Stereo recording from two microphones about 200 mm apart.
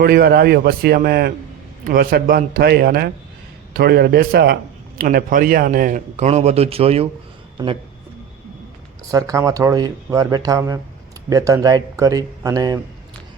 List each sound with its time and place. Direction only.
0.0 s a man's voice: 55° right (ahead or behind); by 7.1 s 30° right (ahead or behind)
9.0 s speech: 15° right (ahead or behind)